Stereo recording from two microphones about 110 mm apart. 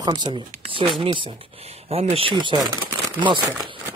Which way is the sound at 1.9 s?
65° right (ahead or behind).